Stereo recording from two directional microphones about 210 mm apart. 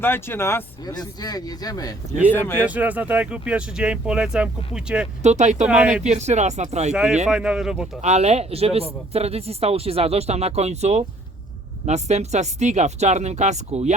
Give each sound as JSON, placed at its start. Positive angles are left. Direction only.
{"t": 0.0, "sound": "speech", "side_deg": 10}
{"t": 2.6, "sound": "speech", "side_deg": -5}
{"t": 5.2, "sound": "speech", "side_deg": -35}
{"t": 5.6, "sound": "speech", "side_deg": -5}
{"t": 5.9, "sound": "speech", "side_deg": -35}
{"t": 6.9, "sound": "speech", "side_deg": -5}
{"t": 8.0, "sound": "speech", "side_deg": -30}